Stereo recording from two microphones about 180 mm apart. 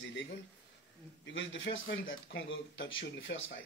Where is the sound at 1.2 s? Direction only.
90° left.